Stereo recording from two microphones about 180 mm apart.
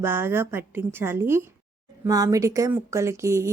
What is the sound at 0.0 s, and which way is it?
A woman's voice, 10° right (ahead or behind).